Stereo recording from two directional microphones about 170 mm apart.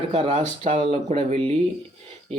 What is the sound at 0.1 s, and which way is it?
Speech, 40° right (ahead or behind).